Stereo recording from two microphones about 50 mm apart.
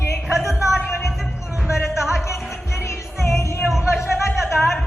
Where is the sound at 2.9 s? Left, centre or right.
Left.